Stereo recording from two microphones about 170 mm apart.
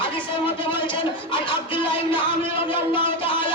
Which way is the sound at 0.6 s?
30° left (ahead or behind).